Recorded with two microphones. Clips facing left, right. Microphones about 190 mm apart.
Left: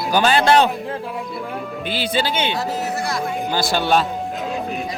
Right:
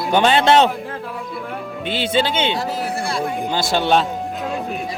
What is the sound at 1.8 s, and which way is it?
Speech, 25° right (ahead or behind).